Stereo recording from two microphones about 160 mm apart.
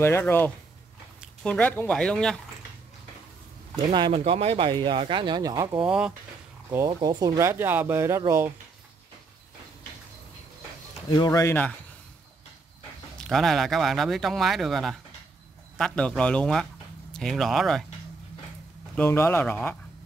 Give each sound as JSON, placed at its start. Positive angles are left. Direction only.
{"t": 0.0, "sound": "speech", "side_deg": 15}
{"t": 3.7, "sound": "speech", "side_deg": -30}
{"t": 5.8, "sound": "speech", "side_deg": -5}
{"t": 6.9, "sound": "speech", "side_deg": -25}
{"t": 11.1, "sound": "speech", "side_deg": 25}
{"t": 13.2, "sound": "speech", "side_deg": 0}
{"t": 18.9, "sound": "speech", "side_deg": 15}